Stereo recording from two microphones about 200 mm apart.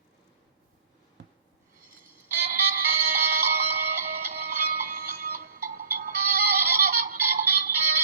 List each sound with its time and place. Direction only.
2.5 s music: 50° right (ahead or behind)